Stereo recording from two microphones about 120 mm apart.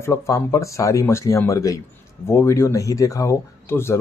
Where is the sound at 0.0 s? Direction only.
25° left (ahead or behind).